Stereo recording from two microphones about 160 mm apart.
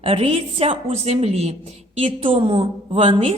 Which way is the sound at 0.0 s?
35° right (ahead or behind).